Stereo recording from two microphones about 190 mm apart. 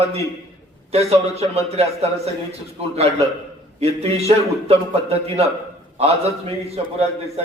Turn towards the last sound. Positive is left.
turn(degrees=-35)  # may be behind; listen again after turning